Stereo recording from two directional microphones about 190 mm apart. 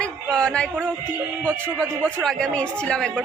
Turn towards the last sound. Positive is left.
turn(degrees=5)  # may be behind; listen again after turning